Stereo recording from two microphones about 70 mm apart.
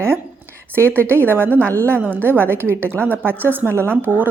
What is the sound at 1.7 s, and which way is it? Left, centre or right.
Speech, right.